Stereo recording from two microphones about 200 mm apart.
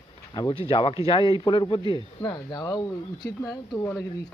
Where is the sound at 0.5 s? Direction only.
30° left (ahead or behind).